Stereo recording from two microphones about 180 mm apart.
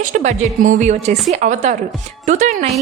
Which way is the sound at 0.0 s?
45° right (ahead or behind).